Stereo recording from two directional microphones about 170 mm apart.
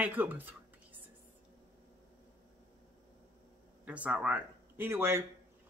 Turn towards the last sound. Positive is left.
turn(degrees=-15)  # may be behind; listen again after turning